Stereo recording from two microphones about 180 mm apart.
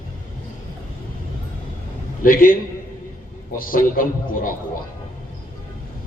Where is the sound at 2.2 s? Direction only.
50° left (ahead or behind).